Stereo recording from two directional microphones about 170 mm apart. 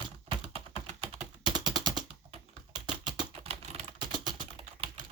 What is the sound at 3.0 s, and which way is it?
Typing, 25° right (ahead or behind).